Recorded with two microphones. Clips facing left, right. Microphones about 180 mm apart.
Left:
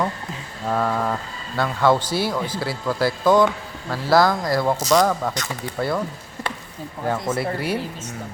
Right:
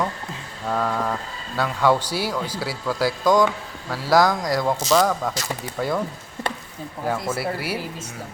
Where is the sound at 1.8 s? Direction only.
10° right (ahead or behind).